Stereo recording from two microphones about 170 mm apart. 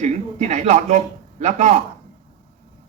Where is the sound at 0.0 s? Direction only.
45° right (ahead or behind).